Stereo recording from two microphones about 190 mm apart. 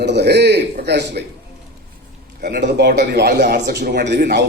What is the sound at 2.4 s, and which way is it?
A man's voice, 50° right (ahead or behind).